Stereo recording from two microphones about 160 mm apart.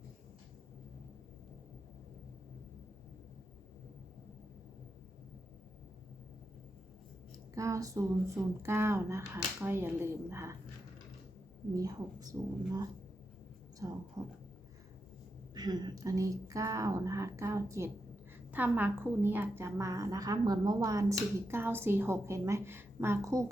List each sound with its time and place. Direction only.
7.5 s a woman's voice: 20° right (ahead or behind)
11.7 s a woman's voice: 25° right (ahead or behind)
15.5 s a woman's voice: 25° right (ahead or behind)